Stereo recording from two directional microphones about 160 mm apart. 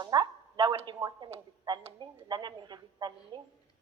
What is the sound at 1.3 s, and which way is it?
Speech, 30° right (ahead or behind).